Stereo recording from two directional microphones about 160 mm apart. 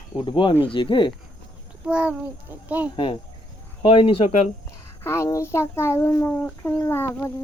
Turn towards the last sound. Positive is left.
turn(degrees=15)  # may be behind; listen again after turning